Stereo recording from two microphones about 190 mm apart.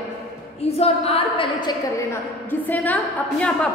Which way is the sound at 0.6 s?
30° left (ahead or behind).